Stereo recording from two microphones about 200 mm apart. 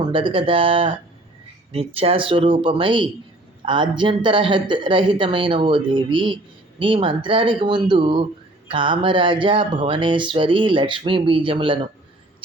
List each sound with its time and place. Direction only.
0.0 s speech: 25° right (ahead or behind)